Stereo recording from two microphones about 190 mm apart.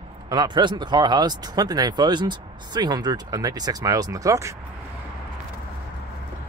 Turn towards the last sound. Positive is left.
turn(degrees=-15)  # may be behind; listen again after turning